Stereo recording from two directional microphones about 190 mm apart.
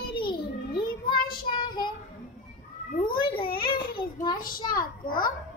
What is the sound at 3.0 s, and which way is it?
Speech, 25° left (ahead or behind).